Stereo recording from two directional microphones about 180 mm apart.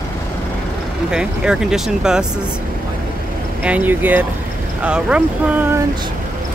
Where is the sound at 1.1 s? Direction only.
5° right (ahead or behind).